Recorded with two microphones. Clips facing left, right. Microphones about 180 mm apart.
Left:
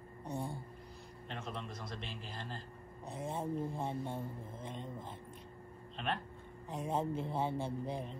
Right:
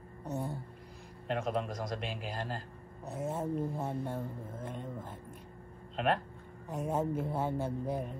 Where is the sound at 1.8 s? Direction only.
90° right.